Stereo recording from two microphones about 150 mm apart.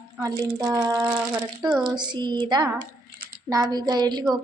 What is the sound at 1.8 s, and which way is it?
A woman's voice, 30° right (ahead or behind).